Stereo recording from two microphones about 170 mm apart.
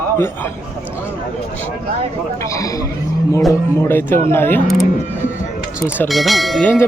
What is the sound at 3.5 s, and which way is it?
Speech, 15° left (ahead or behind).